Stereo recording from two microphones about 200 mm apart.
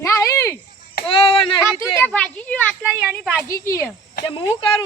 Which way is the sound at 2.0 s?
5° left (ahead or behind).